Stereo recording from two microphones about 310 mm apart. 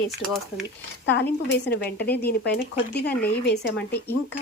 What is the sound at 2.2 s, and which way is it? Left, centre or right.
Speech, left.